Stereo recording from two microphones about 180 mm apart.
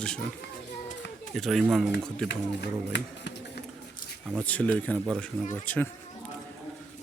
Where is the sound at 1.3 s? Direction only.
Centre (ahead or behind).